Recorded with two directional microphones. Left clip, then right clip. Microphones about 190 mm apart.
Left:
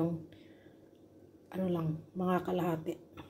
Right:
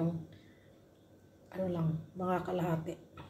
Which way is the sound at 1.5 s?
40° left (ahead or behind).